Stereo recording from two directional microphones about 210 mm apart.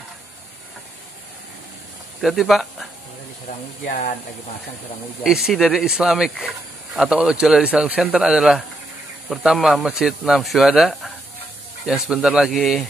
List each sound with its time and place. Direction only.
2.2 s speech: centre (ahead or behind)
3.8 s speech: 40° left (ahead or behind)
5.2 s speech: centre (ahead or behind)